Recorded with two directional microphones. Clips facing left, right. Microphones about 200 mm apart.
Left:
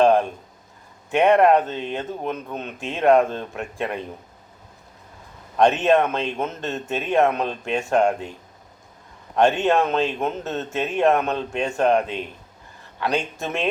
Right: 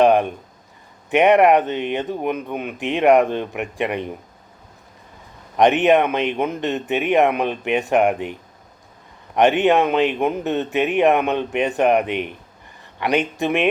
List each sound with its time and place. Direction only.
0.0 s a sound: 15° right (ahead or behind)
1.1 s a man's voice: 15° right (ahead or behind)
5.5 s a man's voice: 15° right (ahead or behind)